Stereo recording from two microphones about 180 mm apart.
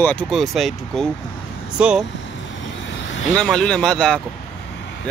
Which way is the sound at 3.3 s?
5° left (ahead or behind).